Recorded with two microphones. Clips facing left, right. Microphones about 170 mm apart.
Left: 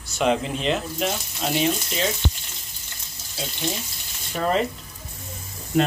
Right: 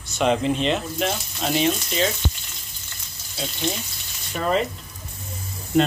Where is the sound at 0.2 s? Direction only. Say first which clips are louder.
Right 2 dB; 5° left (ahead or behind).